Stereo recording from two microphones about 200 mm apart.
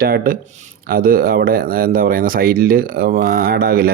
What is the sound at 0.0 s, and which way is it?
Speech, 50° right (ahead or behind).